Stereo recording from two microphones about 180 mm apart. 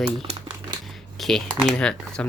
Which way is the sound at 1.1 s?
Centre (ahead or behind).